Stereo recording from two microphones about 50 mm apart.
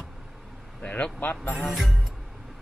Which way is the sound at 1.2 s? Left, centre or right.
Left.